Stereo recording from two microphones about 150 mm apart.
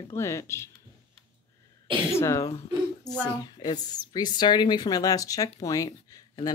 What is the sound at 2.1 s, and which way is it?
Speech, 20° left (ahead or behind).